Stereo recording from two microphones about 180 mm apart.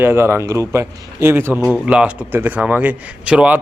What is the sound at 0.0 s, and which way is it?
A man's voice, 15° right (ahead or behind).